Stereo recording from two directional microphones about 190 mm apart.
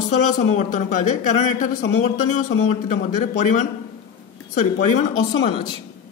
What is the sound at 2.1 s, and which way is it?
Speech, 40° left (ahead or behind).